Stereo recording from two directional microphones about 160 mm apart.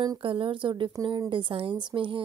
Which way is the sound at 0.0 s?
30° right (ahead or behind).